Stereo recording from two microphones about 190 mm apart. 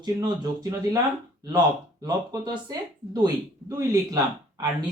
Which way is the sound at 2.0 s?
20° right (ahead or behind).